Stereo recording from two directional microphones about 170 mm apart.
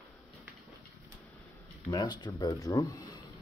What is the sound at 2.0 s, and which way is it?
Speech, 25° left (ahead or behind).